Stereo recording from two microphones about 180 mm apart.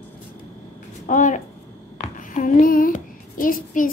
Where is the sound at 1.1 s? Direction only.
45° left (ahead or behind).